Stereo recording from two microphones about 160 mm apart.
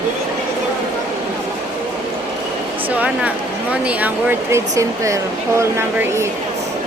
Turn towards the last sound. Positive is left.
turn(degrees=-15)  # may be behind; listen again after turning